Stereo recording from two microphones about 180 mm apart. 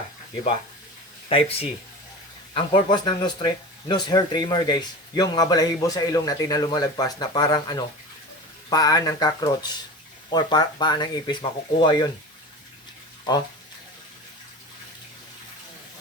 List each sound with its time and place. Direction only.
1.3 s speech: 30° left (ahead or behind)